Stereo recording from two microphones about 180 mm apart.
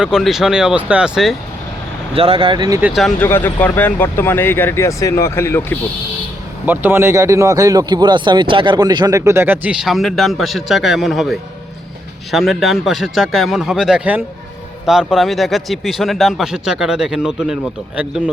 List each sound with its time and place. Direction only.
0.0 s speech: centre (ahead or behind)
2.1 s speech: 30° right (ahead or behind)
2.8 s speech: centre (ahead or behind)
3.2 s speech: 10° left (ahead or behind)
6.7 s speech: 10° right (ahead or behind)